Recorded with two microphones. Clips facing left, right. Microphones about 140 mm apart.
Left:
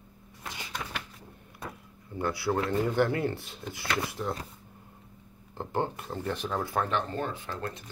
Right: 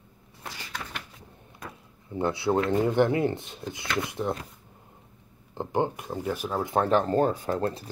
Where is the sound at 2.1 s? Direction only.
20° right (ahead or behind).